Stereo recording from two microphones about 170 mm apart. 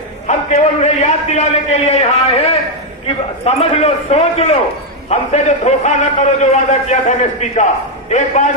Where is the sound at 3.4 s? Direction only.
35° left (ahead or behind).